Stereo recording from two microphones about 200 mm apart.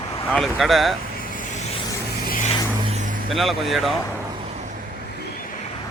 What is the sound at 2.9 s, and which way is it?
Vehicle, 40° right (ahead or behind).